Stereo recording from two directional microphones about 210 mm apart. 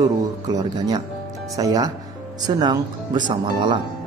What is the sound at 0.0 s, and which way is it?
Speech, 20° right (ahead or behind).